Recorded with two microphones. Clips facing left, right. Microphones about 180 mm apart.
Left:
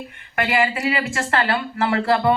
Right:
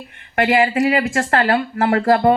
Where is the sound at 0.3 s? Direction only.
45° right (ahead or behind).